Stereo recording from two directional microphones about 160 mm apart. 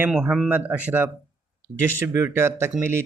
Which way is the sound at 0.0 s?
5° right (ahead or behind).